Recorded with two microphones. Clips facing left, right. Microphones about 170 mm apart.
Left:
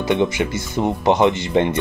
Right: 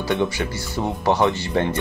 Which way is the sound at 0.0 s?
20° left (ahead or behind).